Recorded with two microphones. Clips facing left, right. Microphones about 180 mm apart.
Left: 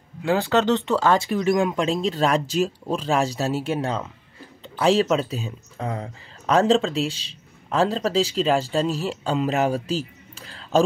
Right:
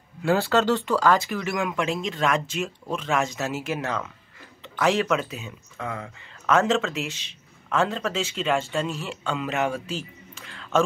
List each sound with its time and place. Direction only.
0.2 s speech: 20° left (ahead or behind); by 10.8 s 35° left (ahead or behind)